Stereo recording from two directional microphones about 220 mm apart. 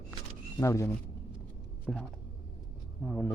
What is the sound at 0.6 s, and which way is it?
Speech, 15° left (ahead or behind).